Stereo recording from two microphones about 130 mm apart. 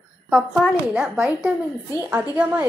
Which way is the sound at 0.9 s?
10° right (ahead or behind).